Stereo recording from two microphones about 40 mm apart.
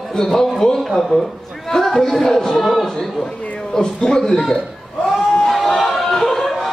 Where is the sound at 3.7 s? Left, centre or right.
Centre.